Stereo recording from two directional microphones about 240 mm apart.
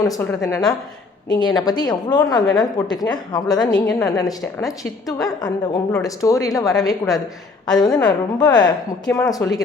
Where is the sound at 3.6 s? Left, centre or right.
Centre.